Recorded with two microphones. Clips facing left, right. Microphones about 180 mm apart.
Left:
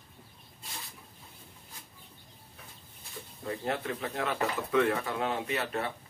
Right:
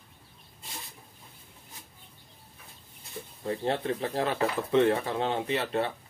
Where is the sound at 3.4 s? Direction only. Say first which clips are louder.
Right 4 dB; 30° right (ahead or behind).